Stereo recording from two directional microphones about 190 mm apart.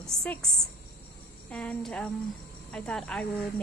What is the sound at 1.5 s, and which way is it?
Speech, 5° left (ahead or behind).